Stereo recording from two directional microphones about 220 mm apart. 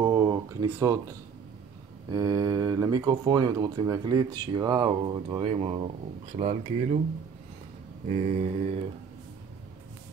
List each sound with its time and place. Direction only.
0.0 s a sound: 15° right (ahead or behind)
2.0 s speech: 15° right (ahead or behind); by 7.0 s 35° right (ahead or behind)
8.1 s speech: 30° right (ahead or behind)